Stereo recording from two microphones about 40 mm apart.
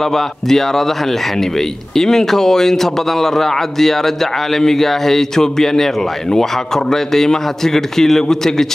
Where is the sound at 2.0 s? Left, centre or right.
Centre.